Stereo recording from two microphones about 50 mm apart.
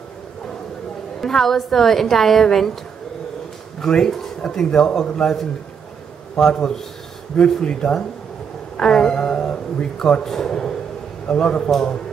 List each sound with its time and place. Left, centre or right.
1.2 s a woman's voice: centre
3.8 s speech: centre
6.3 s a man's voice: centre